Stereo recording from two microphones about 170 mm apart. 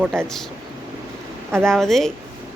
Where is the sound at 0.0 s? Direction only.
15° right (ahead or behind).